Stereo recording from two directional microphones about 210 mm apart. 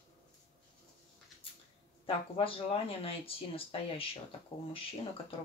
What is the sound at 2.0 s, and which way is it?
Speech, 25° left (ahead or behind).